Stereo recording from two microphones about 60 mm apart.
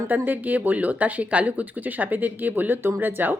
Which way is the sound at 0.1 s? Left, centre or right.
Right.